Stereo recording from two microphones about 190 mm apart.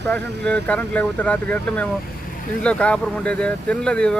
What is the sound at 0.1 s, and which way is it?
Speech, 5° left (ahead or behind).